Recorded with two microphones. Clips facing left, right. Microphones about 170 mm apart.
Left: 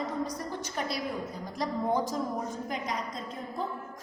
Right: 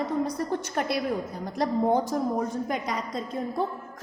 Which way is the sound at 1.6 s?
60° right (ahead or behind).